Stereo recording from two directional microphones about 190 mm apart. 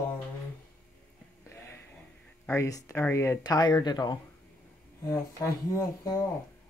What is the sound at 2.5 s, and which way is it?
Speech, 15° left (ahead or behind).